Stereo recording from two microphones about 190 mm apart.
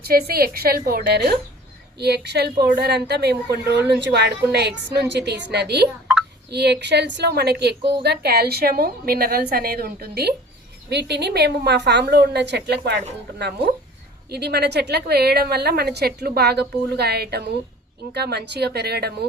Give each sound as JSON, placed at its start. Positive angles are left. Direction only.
{"t": 0.0, "sound": "a woman's voice", "side_deg": -55}
{"t": 14.3, "sound": "a woman's voice", "side_deg": -55}